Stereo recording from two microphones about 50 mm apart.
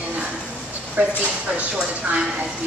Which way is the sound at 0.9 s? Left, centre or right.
Right.